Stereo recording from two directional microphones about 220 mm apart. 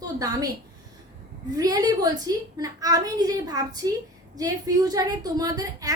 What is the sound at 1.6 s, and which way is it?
A woman's voice, 15° right (ahead or behind).